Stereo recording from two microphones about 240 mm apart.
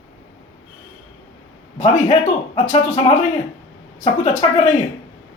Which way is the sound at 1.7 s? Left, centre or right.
Left.